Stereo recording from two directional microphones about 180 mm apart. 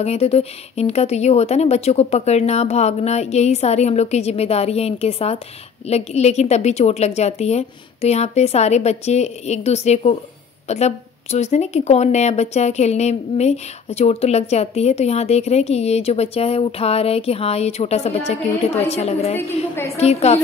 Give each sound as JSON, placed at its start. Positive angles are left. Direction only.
{"t": 0.0, "sound": "a woman's voice", "side_deg": 35}
{"t": 19.7, "sound": "a woman's voice", "side_deg": 15}
{"t": 20.0, "sound": "a woman's voice", "side_deg": 35}